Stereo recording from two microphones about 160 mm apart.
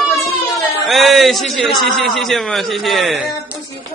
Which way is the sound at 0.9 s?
Centre (ahead or behind).